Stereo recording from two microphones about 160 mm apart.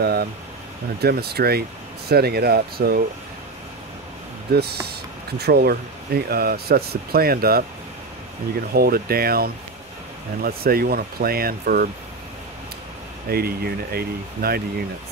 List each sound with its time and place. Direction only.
0.0 s speech: 75° right (ahead or behind)
4.5 s speech: 80° right
8.7 s speech: 70° right (ahead or behind)
13.3 s speech: 75° right (ahead or behind)